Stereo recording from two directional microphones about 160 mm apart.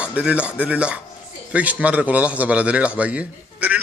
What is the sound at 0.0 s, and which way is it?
A man's voice, 10° right (ahead or behind).